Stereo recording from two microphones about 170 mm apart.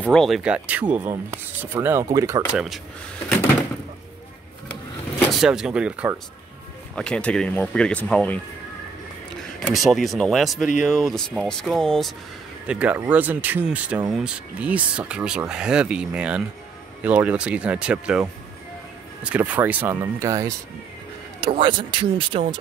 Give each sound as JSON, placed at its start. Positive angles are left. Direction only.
{"t": 0.0, "sound": "speech", "side_deg": 5}
{"t": 2.5, "sound": "speech", "side_deg": -5}
{"t": 5.4, "sound": "speech", "side_deg": -5}
{"t": 7.0, "sound": "speech", "side_deg": 5}
{"t": 19.2, "sound": "speech", "side_deg": -10}
{"t": 21.5, "sound": "speech", "side_deg": -30}